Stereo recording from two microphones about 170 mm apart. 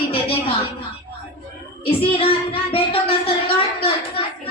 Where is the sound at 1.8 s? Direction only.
35° left (ahead or behind).